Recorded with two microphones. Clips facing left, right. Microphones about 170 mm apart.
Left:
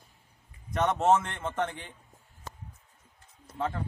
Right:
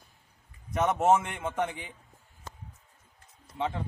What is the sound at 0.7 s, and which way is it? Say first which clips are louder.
A man's voice: even; 5° right (ahead or behind).